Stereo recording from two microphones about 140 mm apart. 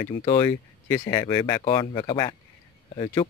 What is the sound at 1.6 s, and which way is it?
Speech, 40° left (ahead or behind).